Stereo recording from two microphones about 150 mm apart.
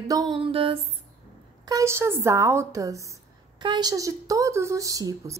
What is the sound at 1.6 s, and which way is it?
A woman's voice, 20° right (ahead or behind).